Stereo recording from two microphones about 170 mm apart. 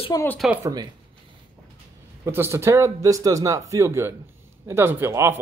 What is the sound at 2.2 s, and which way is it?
Speech, 15° right (ahead or behind).